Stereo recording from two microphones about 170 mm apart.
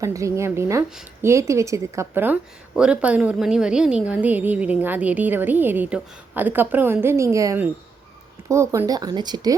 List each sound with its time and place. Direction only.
0.0 s a woman's voice: 20° right (ahead or behind)